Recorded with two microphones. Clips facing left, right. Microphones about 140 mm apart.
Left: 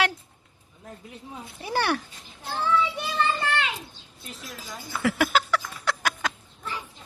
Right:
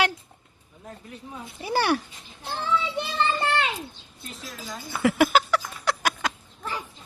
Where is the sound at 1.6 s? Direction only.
5° right (ahead or behind).